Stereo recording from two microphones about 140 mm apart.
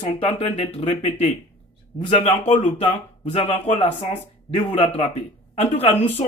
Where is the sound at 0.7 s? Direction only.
45° left (ahead or behind).